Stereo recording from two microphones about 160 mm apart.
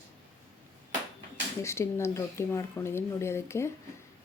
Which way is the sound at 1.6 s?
15° left (ahead or behind).